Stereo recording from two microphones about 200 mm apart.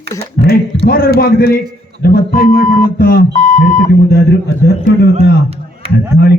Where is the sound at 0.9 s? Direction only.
50° left (ahead or behind).